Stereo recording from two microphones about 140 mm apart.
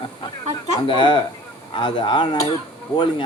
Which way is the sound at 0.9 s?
35° left (ahead or behind).